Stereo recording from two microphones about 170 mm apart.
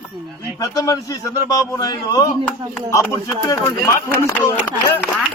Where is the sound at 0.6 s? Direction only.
20° left (ahead or behind).